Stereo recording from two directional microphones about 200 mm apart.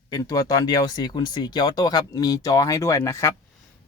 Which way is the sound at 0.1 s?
20° left (ahead or behind).